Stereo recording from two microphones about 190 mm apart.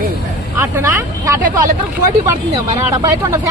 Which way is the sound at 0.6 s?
15° right (ahead or behind).